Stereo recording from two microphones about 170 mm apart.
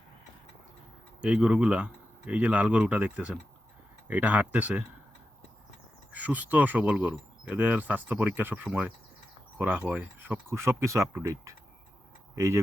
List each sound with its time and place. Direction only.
1.2 s speech: 5° right (ahead or behind)
6.1 s speech: 10° right (ahead or behind)